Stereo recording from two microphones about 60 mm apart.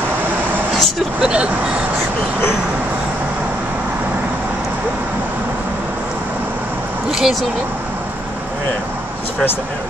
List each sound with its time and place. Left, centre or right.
1.2 s speech: centre
7.1 s speech: centre